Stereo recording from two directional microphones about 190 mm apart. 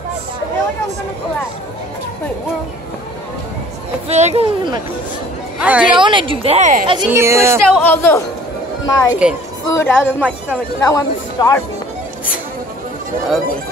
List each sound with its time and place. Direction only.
4.1 s speech: 35° right (ahead or behind)
5.6 s a woman's voice: 5° right (ahead or behind)
5.9 s a woman's voice: 25° right (ahead or behind)
7.1 s speech: 15° right (ahead or behind)
7.8 s speech: 10° left (ahead or behind)